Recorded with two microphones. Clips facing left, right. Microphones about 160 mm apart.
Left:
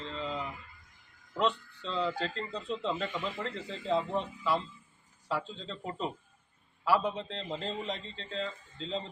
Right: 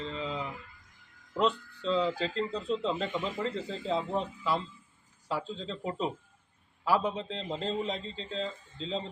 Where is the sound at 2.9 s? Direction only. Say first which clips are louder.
Right 2 dB; 25° right (ahead or behind).